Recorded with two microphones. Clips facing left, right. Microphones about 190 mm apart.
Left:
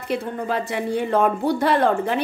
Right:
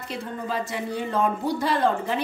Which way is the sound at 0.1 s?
60° left (ahead or behind).